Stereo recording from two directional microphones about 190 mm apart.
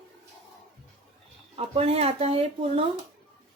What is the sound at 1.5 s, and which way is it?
A woman's voice, 30° right (ahead or behind).